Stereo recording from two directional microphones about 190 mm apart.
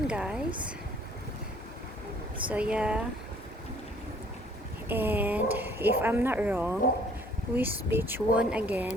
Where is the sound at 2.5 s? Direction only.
5° right (ahead or behind).